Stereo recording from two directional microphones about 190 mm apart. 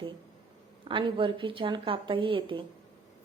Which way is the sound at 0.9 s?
25° right (ahead or behind).